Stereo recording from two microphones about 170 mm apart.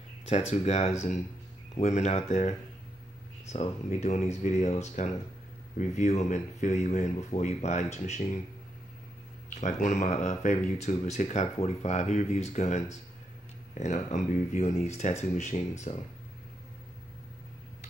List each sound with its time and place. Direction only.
0.5 s speech: 40° left (ahead or behind)
9.6 s speech: 45° left (ahead or behind)